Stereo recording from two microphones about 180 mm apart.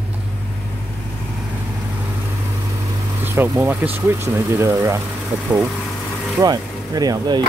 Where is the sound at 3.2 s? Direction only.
15° right (ahead or behind).